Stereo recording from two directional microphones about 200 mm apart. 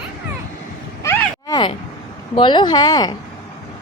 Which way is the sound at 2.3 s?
20° left (ahead or behind).